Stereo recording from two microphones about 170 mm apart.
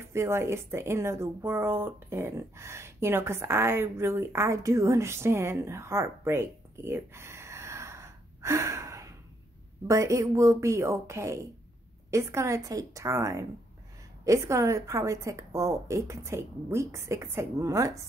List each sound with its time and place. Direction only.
0.0 s a woman's voice: 15° right (ahead or behind)